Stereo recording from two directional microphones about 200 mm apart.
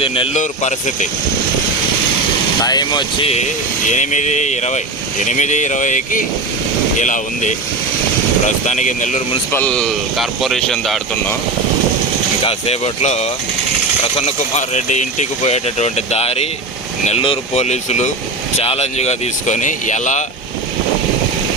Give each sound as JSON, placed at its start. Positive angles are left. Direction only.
{"t": 0.0, "sound": "speech", "side_deg": 25}
{"t": 2.6, "sound": "speech", "side_deg": 20}
{"t": 3.8, "sound": "speech", "side_deg": 35}
{"t": 9.5, "sound": "speech", "side_deg": 10}
{"t": 12.5, "sound": "speech", "side_deg": 30}